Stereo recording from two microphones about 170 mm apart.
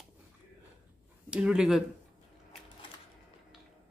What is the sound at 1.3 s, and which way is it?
Speech, 5° right (ahead or behind).